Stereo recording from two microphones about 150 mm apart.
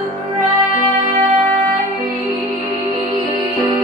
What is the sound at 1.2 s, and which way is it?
Music, 55° right (ahead or behind).